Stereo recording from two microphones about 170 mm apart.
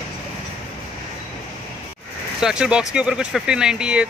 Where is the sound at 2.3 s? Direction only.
5° right (ahead or behind).